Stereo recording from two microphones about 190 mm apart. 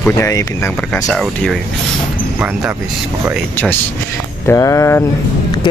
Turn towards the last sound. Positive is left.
turn(degrees=15)  # may be behind; listen again after turning